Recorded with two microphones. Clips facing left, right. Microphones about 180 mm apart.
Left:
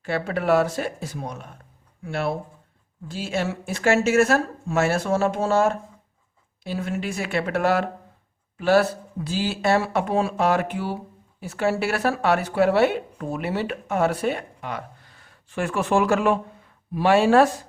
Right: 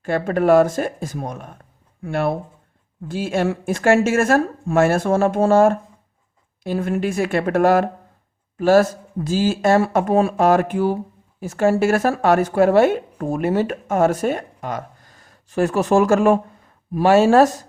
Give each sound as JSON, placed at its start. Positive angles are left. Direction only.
{"t": 0.0, "sound": "speech", "side_deg": -50}